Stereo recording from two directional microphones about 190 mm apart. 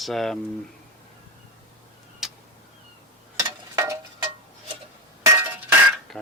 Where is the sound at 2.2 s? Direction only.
5° right (ahead or behind).